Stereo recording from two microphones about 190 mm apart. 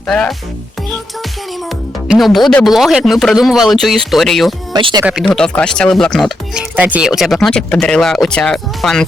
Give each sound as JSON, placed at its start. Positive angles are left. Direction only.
{"t": 0.1, "sound": "speech", "side_deg": 5}
{"t": 2.0, "sound": "speech", "side_deg": 0}
{"t": 4.7, "sound": "speech", "side_deg": -25}
{"t": 5.2, "sound": "speech", "side_deg": 5}